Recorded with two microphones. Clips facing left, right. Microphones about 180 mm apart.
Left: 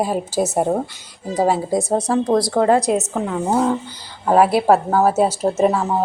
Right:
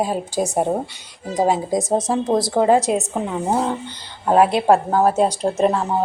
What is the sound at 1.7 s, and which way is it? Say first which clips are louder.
Speech: left 1 dB; 20° right (ahead or behind).